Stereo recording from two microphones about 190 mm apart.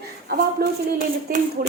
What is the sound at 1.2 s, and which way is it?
Speech, 45° right (ahead or behind).